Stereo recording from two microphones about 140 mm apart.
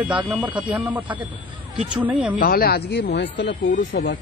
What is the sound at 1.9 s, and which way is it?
Speech, 10° right (ahead or behind).